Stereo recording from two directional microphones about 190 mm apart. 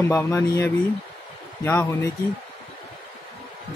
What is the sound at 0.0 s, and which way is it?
Speech, 15° left (ahead or behind).